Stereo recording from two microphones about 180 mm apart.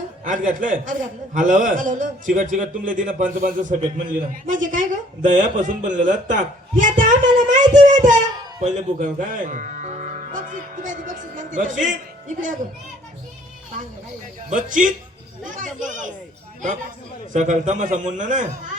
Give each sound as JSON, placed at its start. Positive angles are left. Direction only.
{"t": 0.3, "sound": "a man's voice", "side_deg": -45}
{"t": 8.6, "sound": "music", "side_deg": -45}
{"t": 12.3, "sound": "a man's voice", "side_deg": -45}
{"t": 14.5, "sound": "a man's voice", "side_deg": -45}
{"t": 17.3, "sound": "a man's voice", "side_deg": -40}